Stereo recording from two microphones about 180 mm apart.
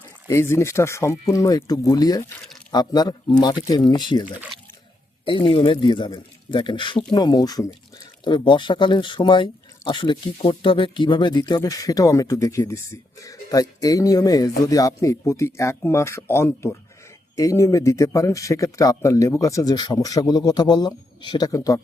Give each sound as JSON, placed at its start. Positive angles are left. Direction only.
{"t": 0.3, "sound": "speech", "side_deg": 15}